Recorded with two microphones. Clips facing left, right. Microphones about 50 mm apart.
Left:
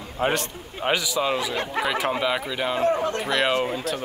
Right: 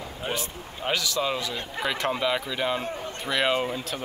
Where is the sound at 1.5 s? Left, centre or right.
Left.